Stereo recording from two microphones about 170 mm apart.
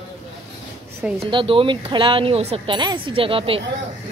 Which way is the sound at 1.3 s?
30° right (ahead or behind).